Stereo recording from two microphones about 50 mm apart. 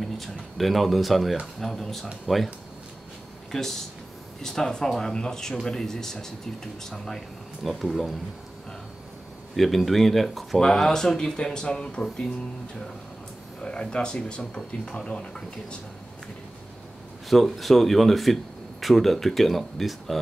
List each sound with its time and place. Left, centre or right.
0.0 s speech: centre
3.5 s speech: centre
9.6 s speech: centre
13.6 s speech: centre
17.3 s speech: centre